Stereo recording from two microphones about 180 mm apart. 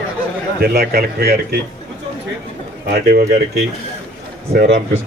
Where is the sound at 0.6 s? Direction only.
60° right (ahead or behind).